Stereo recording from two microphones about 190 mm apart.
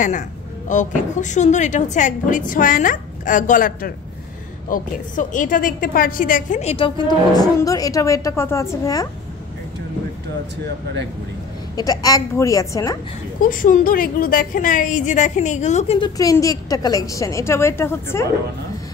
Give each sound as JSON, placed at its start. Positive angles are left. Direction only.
{"t": 0.7, "sound": "a woman's voice", "side_deg": 40}
{"t": 11.7, "sound": "a woman's voice", "side_deg": 20}
{"t": 13.4, "sound": "a woman's voice", "side_deg": 45}
{"t": 16.0, "sound": "a woman's voice", "side_deg": 20}